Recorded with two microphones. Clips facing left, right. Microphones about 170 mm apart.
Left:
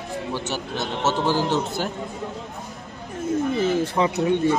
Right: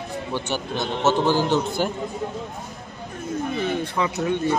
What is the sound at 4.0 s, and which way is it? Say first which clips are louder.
Speech: left 2 dB; 30° left (ahead or behind).